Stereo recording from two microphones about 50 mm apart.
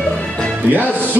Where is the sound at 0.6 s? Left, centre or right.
Right.